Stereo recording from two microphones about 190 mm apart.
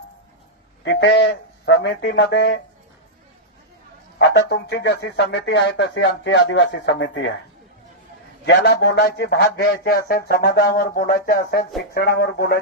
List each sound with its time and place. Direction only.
0.9 s speech: 65° left (ahead or behind)
4.4 s speech: 60° left (ahead or behind); by 7.3 s 75° left (ahead or behind)
8.4 s speech: 60° left (ahead or behind)